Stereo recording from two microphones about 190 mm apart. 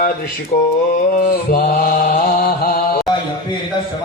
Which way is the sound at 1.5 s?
50° left (ahead or behind).